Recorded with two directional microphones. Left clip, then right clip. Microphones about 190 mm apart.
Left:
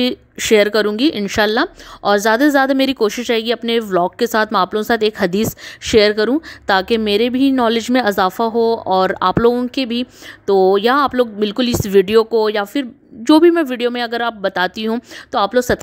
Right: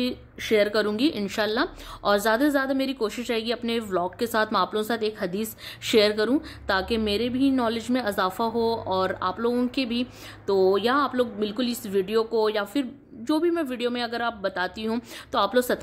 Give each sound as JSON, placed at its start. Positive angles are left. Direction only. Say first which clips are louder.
{"t": 0.0, "sound": "a woman's voice", "louder": "left 11 dB", "side_deg": 50}